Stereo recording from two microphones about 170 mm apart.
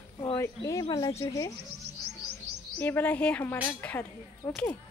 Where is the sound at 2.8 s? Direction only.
10° left (ahead or behind).